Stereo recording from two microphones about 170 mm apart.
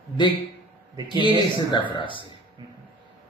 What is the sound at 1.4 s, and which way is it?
Speech, 25° left (ahead or behind).